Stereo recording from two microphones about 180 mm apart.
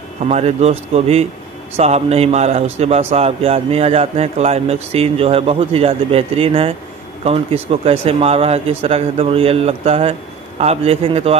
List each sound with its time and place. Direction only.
0.2 s a man's voice: 40° right (ahead or behind)